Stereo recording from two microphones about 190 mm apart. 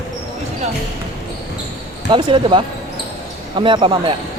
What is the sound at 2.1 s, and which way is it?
Speech, 25° right (ahead or behind).